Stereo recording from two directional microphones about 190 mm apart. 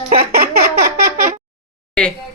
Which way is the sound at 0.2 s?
55° right (ahead or behind).